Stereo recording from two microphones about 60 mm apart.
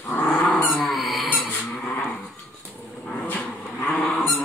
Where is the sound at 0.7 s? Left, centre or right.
Centre.